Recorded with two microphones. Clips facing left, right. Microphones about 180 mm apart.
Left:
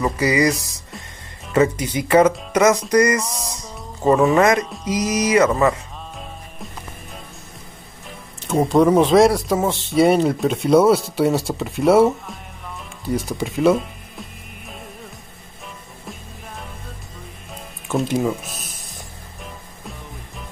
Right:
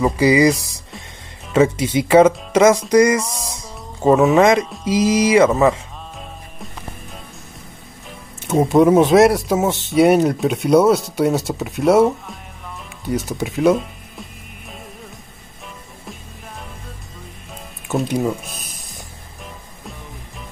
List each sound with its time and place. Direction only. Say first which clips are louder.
0.0 s speech: right 4 dB; 15° right (ahead or behind)
1.8 s speech: right 3 dB; 25° right (ahead or behind)
2.9 s speech: right 3 dB; 10° right (ahead or behind)
3.6 s music: right 2 dB; 5° right (ahead or behind)
4.6 s speech: right 5 dB; centre (ahead or behind)
6.1 s music: even; centre (ahead or behind)
8.5 s speech: right 2 dB; centre (ahead or behind)
17.8 s a sound: even; centre (ahead or behind)
19.4 s music: even; centre (ahead or behind)